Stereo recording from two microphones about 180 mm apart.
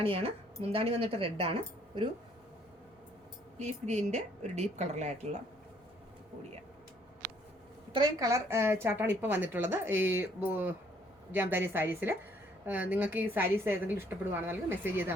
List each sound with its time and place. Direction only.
0.0 s speech: 30° right (ahead or behind)
3.6 s speech: 40° right (ahead or behind)
7.9 s a woman's voice: 20° right (ahead or behind)